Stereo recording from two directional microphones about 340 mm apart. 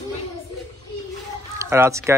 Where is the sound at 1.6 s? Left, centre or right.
Centre.